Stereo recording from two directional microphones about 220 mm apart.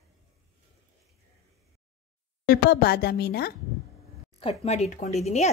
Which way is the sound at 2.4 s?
45° left (ahead or behind).